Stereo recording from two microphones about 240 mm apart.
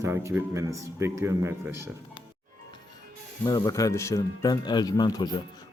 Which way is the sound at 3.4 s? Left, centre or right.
Centre.